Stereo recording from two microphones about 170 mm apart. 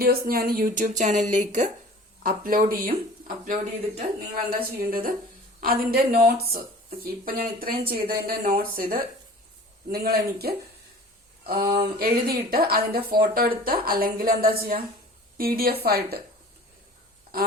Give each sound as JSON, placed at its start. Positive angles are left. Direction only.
{"t": 0.0, "sound": "speech", "side_deg": -60}
{"t": 4.8, "sound": "speech", "side_deg": -55}
{"t": 17.3, "sound": "speech", "side_deg": -60}